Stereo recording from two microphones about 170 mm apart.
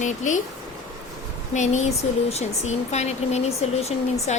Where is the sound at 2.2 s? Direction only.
40° left (ahead or behind).